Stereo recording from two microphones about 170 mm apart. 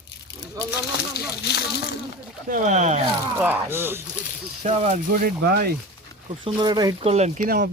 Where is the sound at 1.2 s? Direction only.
70° left (ahead or behind).